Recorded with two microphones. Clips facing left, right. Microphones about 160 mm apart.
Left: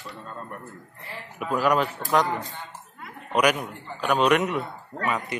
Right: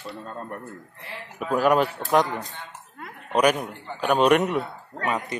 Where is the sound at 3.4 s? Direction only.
40° right (ahead or behind).